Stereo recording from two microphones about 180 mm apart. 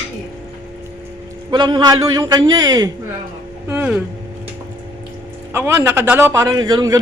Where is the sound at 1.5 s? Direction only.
25° right (ahead or behind).